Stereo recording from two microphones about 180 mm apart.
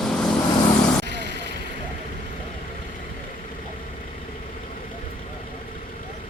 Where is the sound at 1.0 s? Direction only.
75° right (ahead or behind).